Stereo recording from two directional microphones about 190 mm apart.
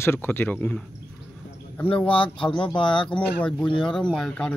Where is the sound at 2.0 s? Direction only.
30° left (ahead or behind).